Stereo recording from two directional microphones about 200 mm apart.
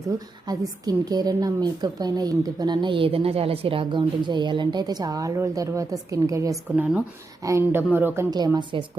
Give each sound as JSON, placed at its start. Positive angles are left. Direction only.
{"t": 0.4, "sound": "a woman's voice", "side_deg": -20}